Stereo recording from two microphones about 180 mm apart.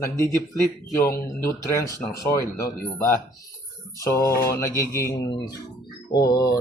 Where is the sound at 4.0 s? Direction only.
15° left (ahead or behind).